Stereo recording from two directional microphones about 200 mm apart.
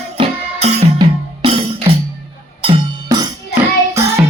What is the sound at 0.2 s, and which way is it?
Music, 30° right (ahead or behind).